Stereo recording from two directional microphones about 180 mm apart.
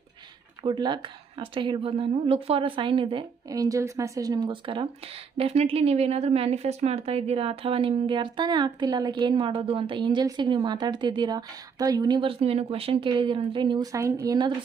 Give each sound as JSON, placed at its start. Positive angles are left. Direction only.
{"t": 0.7, "sound": "speech", "side_deg": -25}